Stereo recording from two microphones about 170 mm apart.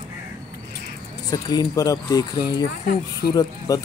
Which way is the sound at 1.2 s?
20° left (ahead or behind).